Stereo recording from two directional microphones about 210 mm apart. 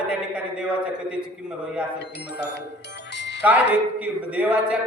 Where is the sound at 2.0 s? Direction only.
55° left (ahead or behind).